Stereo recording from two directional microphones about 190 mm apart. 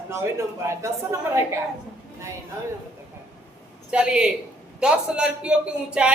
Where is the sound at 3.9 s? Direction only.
5° right (ahead or behind).